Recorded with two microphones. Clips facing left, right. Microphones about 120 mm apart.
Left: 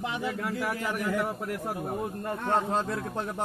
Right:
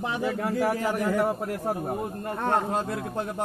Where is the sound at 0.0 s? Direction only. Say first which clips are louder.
Right 4 dB; 35° right (ahead or behind).